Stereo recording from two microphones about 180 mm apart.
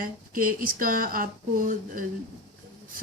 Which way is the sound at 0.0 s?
50° right (ahead or behind).